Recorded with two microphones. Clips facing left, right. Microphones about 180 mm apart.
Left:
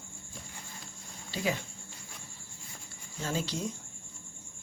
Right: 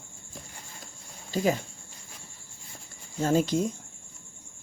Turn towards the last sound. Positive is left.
turn(degrees=-50)  # may be behind; listen again after turning